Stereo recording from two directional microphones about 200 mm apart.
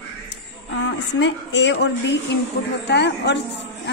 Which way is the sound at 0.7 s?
65° left (ahead or behind).